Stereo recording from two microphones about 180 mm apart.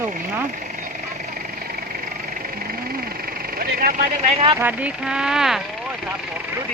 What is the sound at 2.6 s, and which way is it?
Vehicle, 55° right (ahead or behind).